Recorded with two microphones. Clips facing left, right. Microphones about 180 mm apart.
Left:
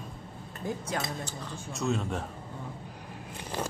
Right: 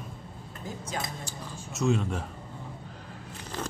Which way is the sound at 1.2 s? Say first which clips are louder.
Left 1 dB; centre (ahead or behind).